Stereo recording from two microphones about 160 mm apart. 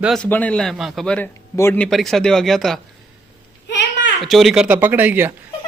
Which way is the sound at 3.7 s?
90° left.